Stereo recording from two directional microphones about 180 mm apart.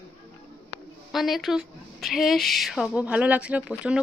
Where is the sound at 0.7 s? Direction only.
65° left (ahead or behind).